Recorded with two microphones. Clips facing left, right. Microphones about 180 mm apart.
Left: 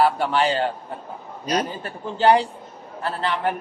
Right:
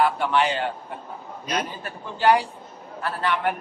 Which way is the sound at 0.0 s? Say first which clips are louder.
Left 2 dB; 35° left (ahead or behind).